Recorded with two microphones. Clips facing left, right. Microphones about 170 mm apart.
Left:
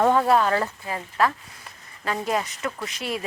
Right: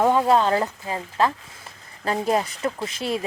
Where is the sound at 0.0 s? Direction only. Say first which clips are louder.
Right 1 dB; 15° right (ahead or behind).